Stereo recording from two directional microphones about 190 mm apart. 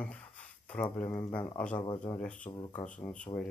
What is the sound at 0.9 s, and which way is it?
Speech, 15° left (ahead or behind).